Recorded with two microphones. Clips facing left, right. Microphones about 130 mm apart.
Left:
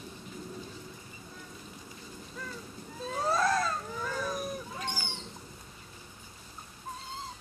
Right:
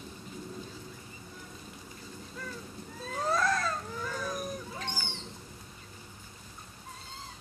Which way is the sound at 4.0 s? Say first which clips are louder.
Left 1 dB; 5° left (ahead or behind).